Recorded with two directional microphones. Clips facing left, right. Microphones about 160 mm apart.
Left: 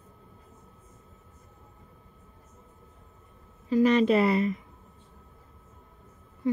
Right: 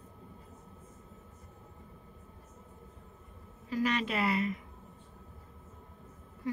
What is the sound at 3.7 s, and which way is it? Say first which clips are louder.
Speech: left 11 dB; 25° left (ahead or behind).